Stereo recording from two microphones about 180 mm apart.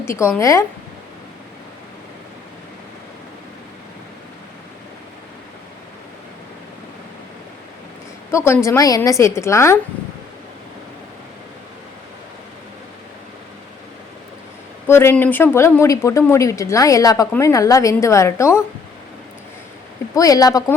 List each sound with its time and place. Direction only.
0.0 s a woman's voice: 15° left (ahead or behind)
8.3 s a woman's voice: 15° left (ahead or behind)
14.8 s a woman's voice: 15° left (ahead or behind)
20.1 s a woman's voice: 20° left (ahead or behind)